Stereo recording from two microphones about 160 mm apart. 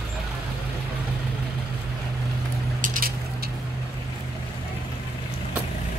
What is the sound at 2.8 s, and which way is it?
Squish, 55° right (ahead or behind).